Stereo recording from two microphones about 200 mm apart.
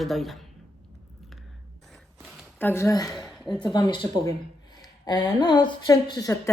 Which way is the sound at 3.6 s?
20° left (ahead or behind).